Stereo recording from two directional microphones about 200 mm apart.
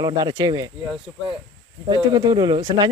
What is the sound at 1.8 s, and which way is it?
Speech, 20° right (ahead or behind).